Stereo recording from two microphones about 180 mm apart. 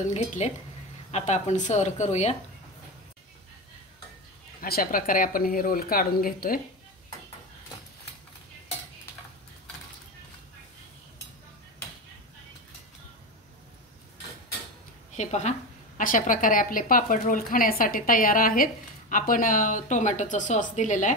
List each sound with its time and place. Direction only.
0.1 s speech: 40° left (ahead or behind)
4.6 s a woman's voice: 55° left (ahead or behind)
15.1 s a woman's voice: 40° left (ahead or behind)